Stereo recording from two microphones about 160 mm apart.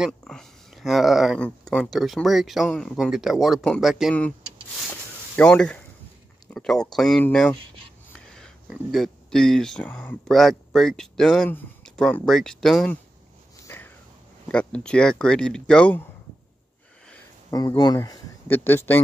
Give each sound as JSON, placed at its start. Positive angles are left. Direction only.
{"t": 0.2, "sound": "speech", "side_deg": 5}
{"t": 5.3, "sound": "speech", "side_deg": 10}
{"t": 8.4, "sound": "speech", "side_deg": 0}
{"t": 13.7, "sound": "a sound", "side_deg": 15}
{"t": 14.5, "sound": "speech", "side_deg": 5}
{"t": 17.5, "sound": "speech", "side_deg": 25}